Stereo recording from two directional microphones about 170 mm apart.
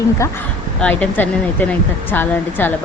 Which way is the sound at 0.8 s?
5° left (ahead or behind).